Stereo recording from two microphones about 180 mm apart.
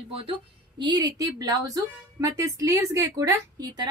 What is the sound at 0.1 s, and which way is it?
A woman's voice, 25° right (ahead or behind).